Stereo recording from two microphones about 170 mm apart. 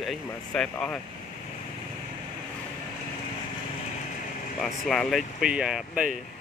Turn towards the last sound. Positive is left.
turn(degrees=-5)  # may be behind; listen again after turning